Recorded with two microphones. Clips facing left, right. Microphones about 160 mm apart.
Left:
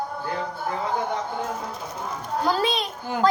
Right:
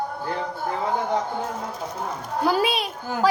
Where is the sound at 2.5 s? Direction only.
10° right (ahead or behind).